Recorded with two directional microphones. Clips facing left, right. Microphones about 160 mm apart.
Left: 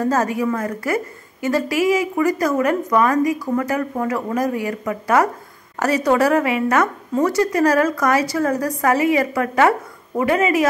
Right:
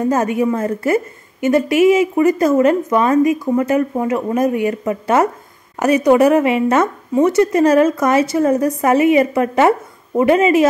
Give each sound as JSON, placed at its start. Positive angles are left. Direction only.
{"t": 0.0, "sound": "a woman's voice", "side_deg": -20}